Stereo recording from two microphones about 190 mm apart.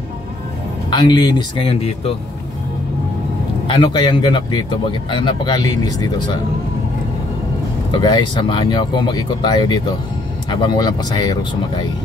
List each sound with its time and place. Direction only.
0.8 s speech: 25° left (ahead or behind)
3.6 s speech: 25° left (ahead or behind)
7.9 s speech: 25° left (ahead or behind)